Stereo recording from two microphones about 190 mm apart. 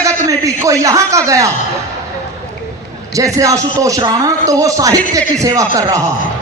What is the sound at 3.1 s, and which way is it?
A man's voice, 15° right (ahead or behind).